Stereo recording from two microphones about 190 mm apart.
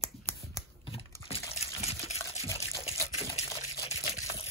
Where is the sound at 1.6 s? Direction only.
35° left (ahead or behind).